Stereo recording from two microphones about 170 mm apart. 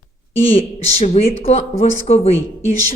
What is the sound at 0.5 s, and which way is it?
Speech, 40° left (ahead or behind).